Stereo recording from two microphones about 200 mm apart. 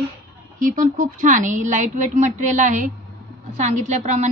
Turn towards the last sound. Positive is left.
turn(degrees=-35)  # may be behind; listen again after turning